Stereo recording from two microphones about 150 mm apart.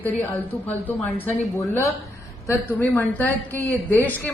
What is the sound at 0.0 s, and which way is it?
Speech, 10° left (ahead or behind).